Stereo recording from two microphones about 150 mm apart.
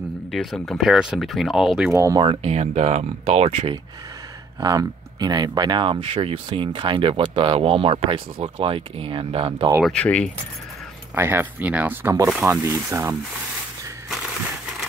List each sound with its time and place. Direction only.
0.3 s speech: centre (ahead or behind)
2.0 s speech: 20° right (ahead or behind)
2.2 s speech: 45° right (ahead or behind)
4.6 s speech: 25° right (ahead or behind)
9.8 s speech: 10° left (ahead or behind)
11.1 s speech: 15° right (ahead or behind)